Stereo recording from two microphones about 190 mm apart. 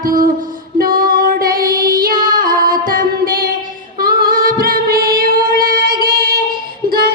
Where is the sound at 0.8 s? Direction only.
50° right (ahead or behind).